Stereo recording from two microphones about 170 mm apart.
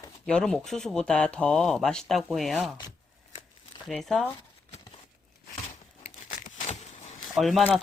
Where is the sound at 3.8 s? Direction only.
Centre (ahead or behind).